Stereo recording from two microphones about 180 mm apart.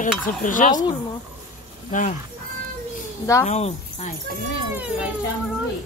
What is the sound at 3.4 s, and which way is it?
Speech, 40° left (ahead or behind).